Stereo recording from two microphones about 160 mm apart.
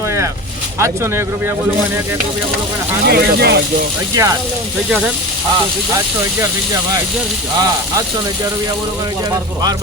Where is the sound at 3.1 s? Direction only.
85° right.